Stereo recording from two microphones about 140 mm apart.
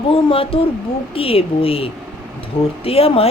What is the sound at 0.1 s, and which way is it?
A woman's voice, 40° left (ahead or behind).